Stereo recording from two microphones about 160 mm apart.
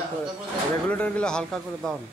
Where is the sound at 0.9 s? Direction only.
5° left (ahead or behind).